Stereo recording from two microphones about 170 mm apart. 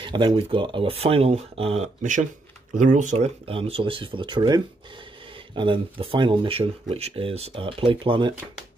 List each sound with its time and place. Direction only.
0.0 s speech: 30° right (ahead or behind)